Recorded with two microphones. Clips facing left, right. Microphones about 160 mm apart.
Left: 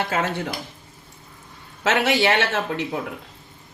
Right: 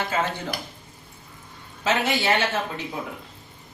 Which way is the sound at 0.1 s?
70° left (ahead or behind).